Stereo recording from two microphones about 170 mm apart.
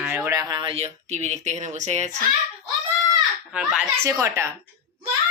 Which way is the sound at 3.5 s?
5° right (ahead or behind).